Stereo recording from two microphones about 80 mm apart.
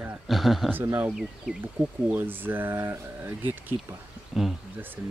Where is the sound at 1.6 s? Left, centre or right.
Right.